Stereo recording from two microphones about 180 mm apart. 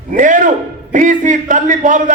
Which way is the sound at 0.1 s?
45° right (ahead or behind).